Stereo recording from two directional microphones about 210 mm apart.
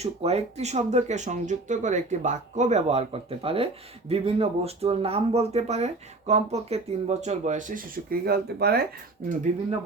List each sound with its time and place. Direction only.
0.0 s speech: 30° right (ahead or behind); by 8.8 s 50° right (ahead or behind)